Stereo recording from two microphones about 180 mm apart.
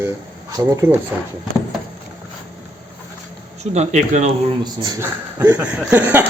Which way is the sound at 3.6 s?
40° right (ahead or behind).